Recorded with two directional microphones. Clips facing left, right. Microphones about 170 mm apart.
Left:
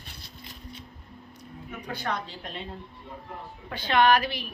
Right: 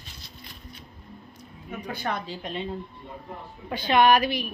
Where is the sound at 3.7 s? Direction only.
15° right (ahead or behind).